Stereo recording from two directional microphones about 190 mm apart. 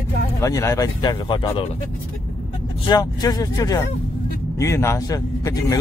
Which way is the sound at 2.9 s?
20° left (ahead or behind).